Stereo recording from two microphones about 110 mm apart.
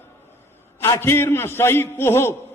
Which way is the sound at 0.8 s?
25° left (ahead or behind).